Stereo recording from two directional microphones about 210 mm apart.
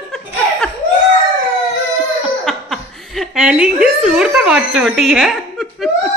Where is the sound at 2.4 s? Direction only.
Centre (ahead or behind).